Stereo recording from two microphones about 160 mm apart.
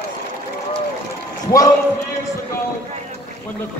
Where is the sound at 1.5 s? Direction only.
20° left (ahead or behind).